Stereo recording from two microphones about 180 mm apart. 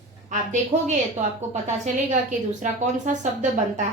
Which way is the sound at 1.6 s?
40° right (ahead or behind).